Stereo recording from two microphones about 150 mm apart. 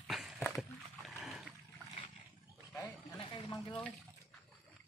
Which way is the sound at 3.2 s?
30° left (ahead or behind).